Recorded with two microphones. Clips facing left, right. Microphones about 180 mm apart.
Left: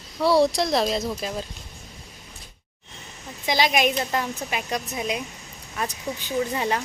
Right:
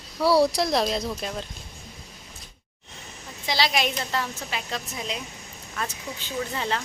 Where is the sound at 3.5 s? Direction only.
15° left (ahead or behind).